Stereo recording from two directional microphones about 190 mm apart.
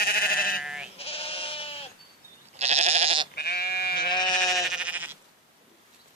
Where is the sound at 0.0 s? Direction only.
50° left (ahead or behind).